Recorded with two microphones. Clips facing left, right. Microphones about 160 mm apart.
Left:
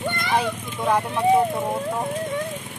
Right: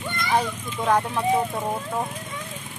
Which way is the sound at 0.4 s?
5° left (ahead or behind).